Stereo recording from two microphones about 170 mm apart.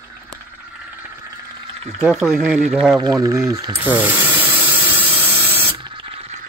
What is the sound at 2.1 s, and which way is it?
Speech, 5° right (ahead or behind).